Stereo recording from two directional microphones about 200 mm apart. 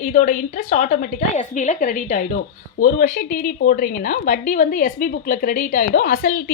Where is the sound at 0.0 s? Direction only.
40° left (ahead or behind).